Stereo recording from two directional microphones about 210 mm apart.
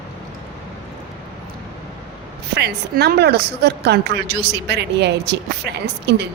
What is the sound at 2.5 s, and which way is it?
Speech, 50° right (ahead or behind).